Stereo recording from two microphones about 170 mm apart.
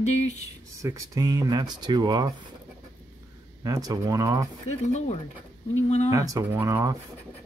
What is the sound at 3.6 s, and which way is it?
Speech, 20° right (ahead or behind).